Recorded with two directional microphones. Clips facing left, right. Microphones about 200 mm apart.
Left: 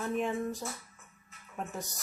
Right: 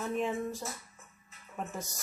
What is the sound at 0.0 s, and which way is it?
A woman's voice, centre (ahead or behind).